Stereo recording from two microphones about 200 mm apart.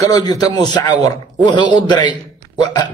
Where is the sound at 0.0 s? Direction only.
20° left (ahead or behind).